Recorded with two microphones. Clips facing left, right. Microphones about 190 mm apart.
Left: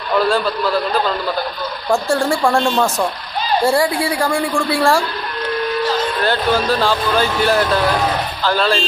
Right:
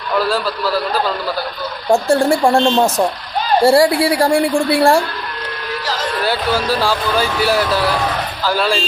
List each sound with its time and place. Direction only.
0.3 s a man's voice: 5° right (ahead or behind)
1.9 s speech: 25° right (ahead or behind)
3.6 s a woman's voice: 30° right (ahead or behind)
6.2 s speech: 10° right (ahead or behind)